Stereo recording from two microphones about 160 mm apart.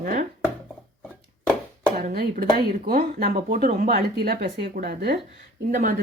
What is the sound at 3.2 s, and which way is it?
Speech, 45° right (ahead or behind).